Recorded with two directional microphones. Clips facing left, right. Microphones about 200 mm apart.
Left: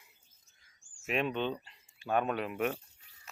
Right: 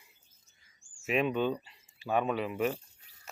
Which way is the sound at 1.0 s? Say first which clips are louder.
Right 4 dB; 5° right (ahead or behind).